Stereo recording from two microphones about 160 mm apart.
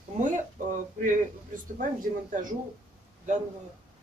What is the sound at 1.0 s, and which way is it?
Speech, 50° right (ahead or behind).